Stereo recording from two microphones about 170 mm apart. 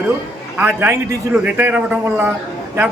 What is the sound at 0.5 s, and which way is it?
A man's voice, 10° right (ahead or behind).